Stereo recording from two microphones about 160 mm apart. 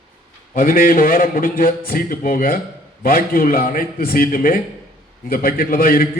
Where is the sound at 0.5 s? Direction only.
60° left (ahead or behind).